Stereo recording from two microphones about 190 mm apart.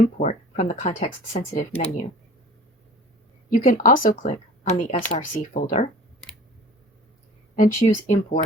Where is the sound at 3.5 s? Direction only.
45° left (ahead or behind).